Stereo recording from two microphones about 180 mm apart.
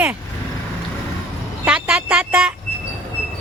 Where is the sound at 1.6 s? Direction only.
5° right (ahead or behind).